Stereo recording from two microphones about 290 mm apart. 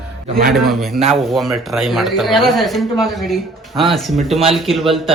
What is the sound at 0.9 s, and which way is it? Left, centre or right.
Speech, right.